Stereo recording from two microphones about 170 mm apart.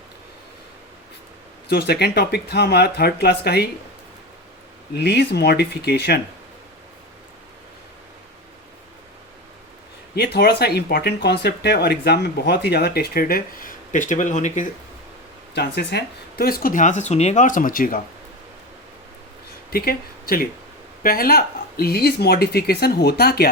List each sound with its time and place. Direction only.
1.6 s speech: 70° left (ahead or behind)
4.9 s speech: 75° left (ahead or behind)
10.3 s speech: 70° left (ahead or behind); by 14.7 s 45° left (ahead or behind)
15.5 s speech: 75° left (ahead or behind); by 18.0 s 55° left (ahead or behind)
19.7 s speech: 60° left (ahead or behind)